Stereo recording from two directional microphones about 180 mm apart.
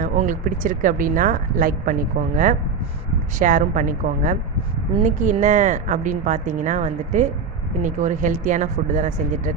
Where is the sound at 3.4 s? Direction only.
45° right (ahead or behind).